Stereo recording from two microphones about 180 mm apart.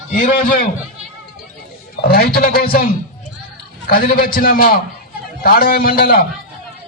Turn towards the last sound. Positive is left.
turn(degrees=55)  # may be behind; listen again after turning